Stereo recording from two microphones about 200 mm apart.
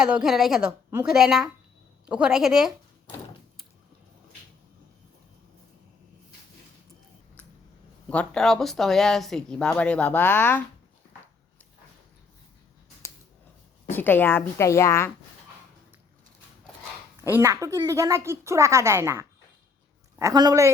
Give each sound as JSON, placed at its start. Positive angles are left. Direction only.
{"t": 0.0, "sound": "speech", "side_deg": -5}
{"t": 8.1, "sound": "speech", "side_deg": 5}
{"t": 13.9, "sound": "a woman's voice", "side_deg": 10}
{"t": 17.2, "sound": "a woman's voice", "side_deg": -10}